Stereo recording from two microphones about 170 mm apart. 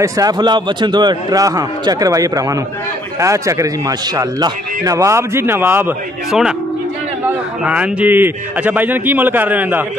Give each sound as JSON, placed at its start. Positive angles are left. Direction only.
{"t": 0.0, "sound": "a man's voice", "side_deg": -20}
{"t": 7.2, "sound": "speech", "side_deg": -5}